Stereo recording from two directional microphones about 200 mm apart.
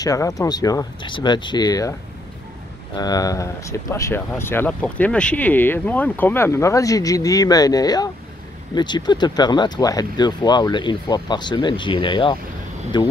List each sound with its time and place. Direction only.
0.0 s speech: 15° left (ahead or behind)